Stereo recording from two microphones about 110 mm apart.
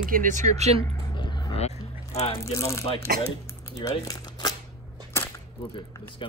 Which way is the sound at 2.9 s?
70° left (ahead or behind).